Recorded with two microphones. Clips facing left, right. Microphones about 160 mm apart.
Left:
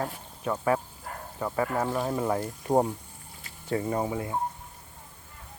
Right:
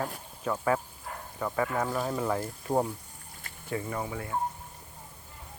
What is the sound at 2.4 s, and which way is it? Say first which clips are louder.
Speech: left 4 dB; 35° left (ahead or behind).